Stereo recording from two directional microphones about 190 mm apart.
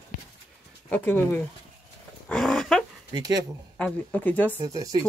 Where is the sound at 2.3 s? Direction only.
5° left (ahead or behind).